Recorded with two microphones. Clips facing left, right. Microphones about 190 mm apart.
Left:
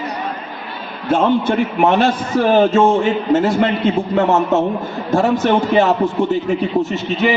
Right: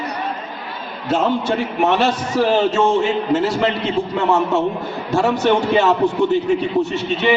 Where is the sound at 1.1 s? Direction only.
55° left (ahead or behind).